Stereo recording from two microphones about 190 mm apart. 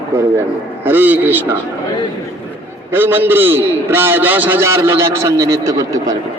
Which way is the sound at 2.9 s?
10° right (ahead or behind).